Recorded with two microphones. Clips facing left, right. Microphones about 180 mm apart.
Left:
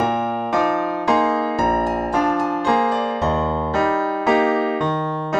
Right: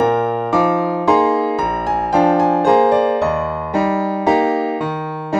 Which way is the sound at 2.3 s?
75° right (ahead or behind).